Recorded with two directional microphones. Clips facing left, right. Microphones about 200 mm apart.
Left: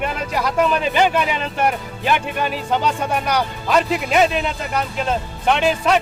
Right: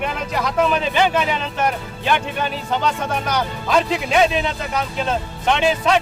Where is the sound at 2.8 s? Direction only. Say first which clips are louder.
Left 1 dB; 10° left (ahead or behind).